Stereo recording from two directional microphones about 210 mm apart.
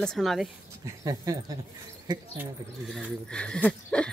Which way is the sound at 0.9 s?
15° right (ahead or behind).